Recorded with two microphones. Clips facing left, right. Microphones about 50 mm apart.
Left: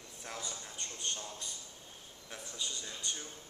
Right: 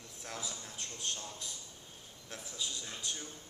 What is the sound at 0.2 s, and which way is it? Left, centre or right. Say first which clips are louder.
A man's voice: even; centre.